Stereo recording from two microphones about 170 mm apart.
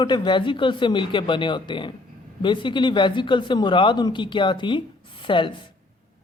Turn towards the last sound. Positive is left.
turn(degrees=30)  # may be behind; listen again after turning